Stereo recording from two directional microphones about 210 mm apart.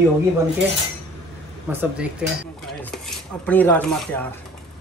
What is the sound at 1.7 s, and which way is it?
Speech, 5° right (ahead or behind).